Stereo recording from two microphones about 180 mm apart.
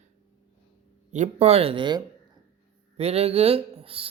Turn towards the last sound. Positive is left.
turn(degrees=-30)  # may be behind; listen again after turning